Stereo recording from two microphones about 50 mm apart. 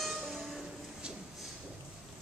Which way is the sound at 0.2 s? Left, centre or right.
Centre.